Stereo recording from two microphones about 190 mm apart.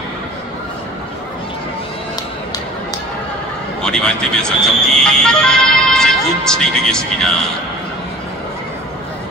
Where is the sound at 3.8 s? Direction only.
5° left (ahead or behind).